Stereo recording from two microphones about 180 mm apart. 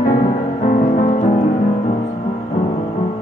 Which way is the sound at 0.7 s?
45° left (ahead or behind).